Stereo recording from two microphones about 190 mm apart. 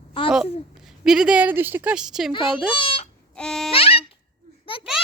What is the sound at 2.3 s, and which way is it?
Speech, 25° left (ahead or behind).